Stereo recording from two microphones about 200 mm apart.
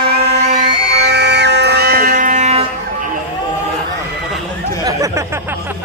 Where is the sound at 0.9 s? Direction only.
55° right (ahead or behind); by 2.6 s 35° right (ahead or behind).